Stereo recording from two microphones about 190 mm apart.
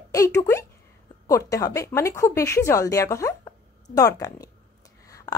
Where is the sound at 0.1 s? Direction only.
15° left (ahead or behind).